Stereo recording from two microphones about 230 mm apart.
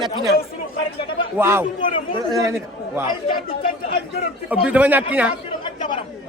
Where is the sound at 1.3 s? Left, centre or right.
Centre.